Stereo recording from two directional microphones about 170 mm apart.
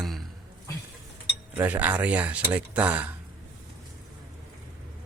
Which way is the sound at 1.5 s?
10° right (ahead or behind).